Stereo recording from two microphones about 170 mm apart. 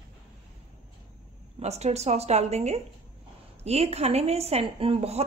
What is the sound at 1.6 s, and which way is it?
A woman's voice, 40° right (ahead or behind).